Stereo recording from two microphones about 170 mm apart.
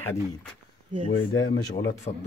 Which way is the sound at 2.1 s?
45° left (ahead or behind).